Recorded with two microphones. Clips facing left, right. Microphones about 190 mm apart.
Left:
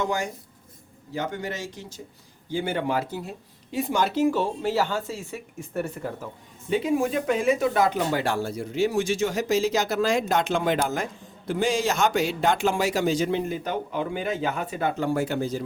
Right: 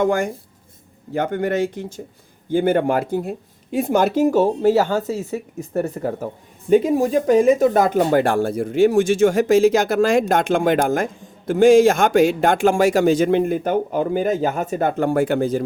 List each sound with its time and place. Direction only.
0.0 s speech: 55° right (ahead or behind)